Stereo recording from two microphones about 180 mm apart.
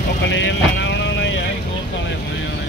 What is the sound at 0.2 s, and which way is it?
Vehicle, 85° left.